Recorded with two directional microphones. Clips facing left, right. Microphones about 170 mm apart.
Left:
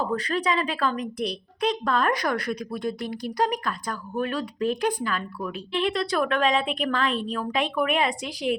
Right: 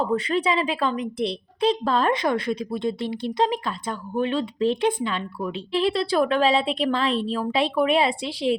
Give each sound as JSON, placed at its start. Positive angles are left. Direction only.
{"t": 0.0, "sound": "a woman's voice", "side_deg": -25}